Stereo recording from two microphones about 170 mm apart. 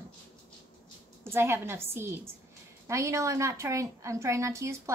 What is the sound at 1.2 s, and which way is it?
A woman's voice, 15° right (ahead or behind).